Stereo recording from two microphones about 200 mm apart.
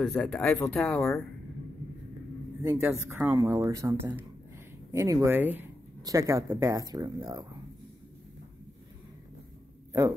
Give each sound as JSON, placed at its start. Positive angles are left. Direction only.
{"t": 0.0, "sound": "speech", "side_deg": 5}
{"t": 2.6, "sound": "speech", "side_deg": -10}